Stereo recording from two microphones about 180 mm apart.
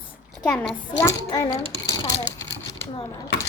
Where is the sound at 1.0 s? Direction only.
20° left (ahead or behind).